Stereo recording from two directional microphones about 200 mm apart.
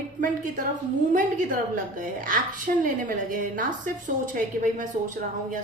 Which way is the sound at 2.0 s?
45° right (ahead or behind).